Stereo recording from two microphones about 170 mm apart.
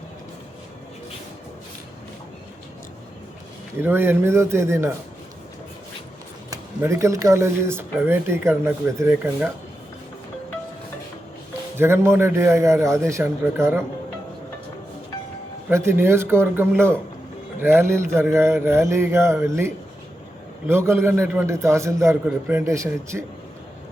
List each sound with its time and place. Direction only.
3.8 s speech: 15° right (ahead or behind)
6.5 s speech: 15° right (ahead or behind)
11.8 s speech: 15° right (ahead or behind)
15.7 s speech: 15° right (ahead or behind)